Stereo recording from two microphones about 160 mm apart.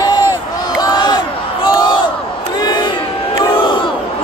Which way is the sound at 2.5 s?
25° left (ahead or behind).